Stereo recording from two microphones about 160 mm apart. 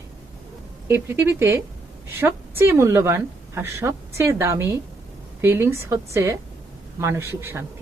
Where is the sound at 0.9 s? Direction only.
15° right (ahead or behind).